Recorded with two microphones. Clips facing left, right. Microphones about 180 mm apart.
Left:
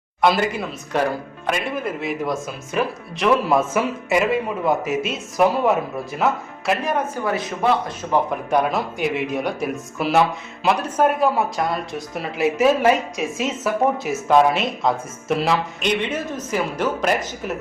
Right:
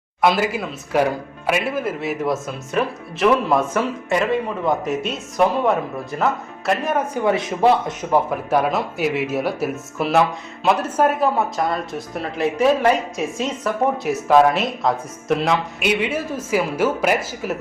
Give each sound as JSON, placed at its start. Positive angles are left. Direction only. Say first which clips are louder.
{"t": 0.2, "sound": "speech", "louder": "even", "side_deg": 0}
{"t": 7.3, "sound": "speech", "louder": "right 5 dB", "side_deg": -25}
{"t": 8.1, "sound": "speech", "louder": "right 1 dB", "side_deg": 0}